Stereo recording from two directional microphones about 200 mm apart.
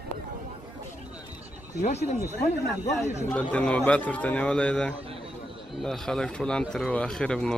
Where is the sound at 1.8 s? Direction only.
35° left (ahead or behind).